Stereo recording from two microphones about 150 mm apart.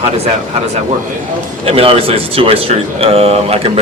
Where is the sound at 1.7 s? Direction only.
40° right (ahead or behind).